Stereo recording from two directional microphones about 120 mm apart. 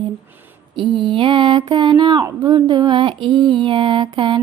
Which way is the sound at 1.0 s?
45° right (ahead or behind).